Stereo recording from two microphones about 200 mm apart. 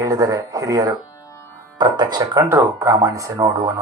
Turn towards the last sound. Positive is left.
turn(degrees=-15)  # may be behind; listen again after turning